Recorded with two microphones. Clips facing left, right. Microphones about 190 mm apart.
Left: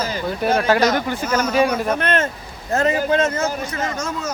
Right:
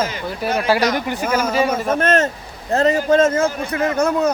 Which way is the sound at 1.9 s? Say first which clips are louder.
Right 4 dB; 45° right (ahead or behind).